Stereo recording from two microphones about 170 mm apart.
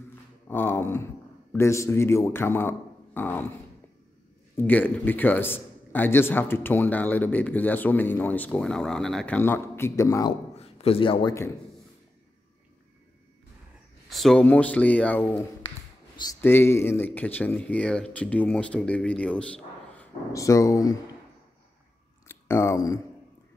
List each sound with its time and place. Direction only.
0.5 s a man's voice: 10° left (ahead or behind)
4.6 s a man's voice: 10° left (ahead or behind)
10.5 s a sound: 35° left (ahead or behind)
14.0 s a man's voice: centre (ahead or behind)
20.3 s speech: 20° left (ahead or behind)
22.3 s speech: 15° left (ahead or behind)